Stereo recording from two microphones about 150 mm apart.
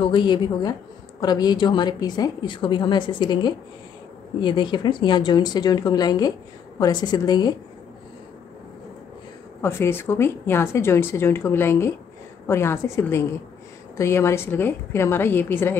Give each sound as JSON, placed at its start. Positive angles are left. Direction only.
{"t": 0.0, "sound": "a woman's voice", "side_deg": 30}
{"t": 9.6, "sound": "speech", "side_deg": 15}